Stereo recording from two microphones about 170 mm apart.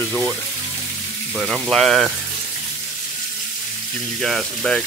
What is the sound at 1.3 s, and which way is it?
Speech, centre (ahead or behind).